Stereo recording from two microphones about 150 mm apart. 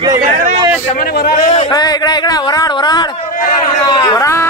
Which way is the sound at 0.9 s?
90° left.